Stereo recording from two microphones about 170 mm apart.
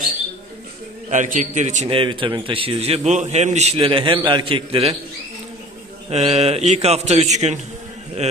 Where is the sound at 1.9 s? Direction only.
30° right (ahead or behind).